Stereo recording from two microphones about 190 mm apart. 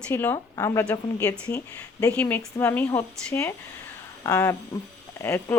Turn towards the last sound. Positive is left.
turn(degrees=15)  # may be behind; listen again after turning